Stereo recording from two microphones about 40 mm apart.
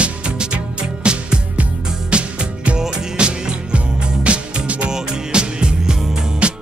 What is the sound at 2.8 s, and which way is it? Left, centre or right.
Music, centre.